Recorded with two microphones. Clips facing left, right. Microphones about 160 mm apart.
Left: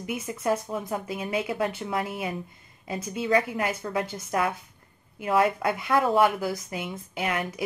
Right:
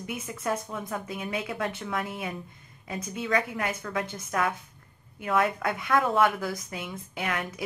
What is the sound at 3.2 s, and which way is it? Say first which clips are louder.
Speech: left 4 dB; 30° left (ahead or behind).